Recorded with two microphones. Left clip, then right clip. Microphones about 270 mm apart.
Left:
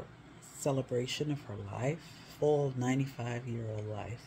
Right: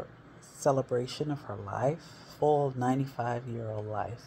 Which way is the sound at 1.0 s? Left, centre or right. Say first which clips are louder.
Right 2 dB; centre.